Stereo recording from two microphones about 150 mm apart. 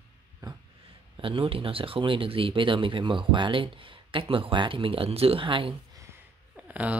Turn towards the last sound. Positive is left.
turn(degrees=-10)  # may be behind; listen again after turning